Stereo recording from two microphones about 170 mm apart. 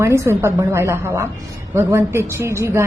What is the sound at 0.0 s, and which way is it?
A woman's voice, 15° right (ahead or behind).